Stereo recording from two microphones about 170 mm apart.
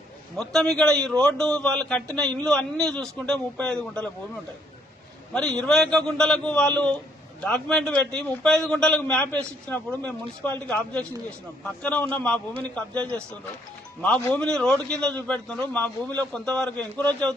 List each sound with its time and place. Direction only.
0.3 s a man's voice: 5° left (ahead or behind)
5.3 s a man's voice: 5° left (ahead or behind)
14.4 s a man's voice: 5° left (ahead or behind)